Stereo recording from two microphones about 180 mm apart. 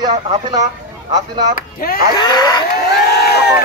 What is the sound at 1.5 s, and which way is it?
Speech, 55° left (ahead or behind).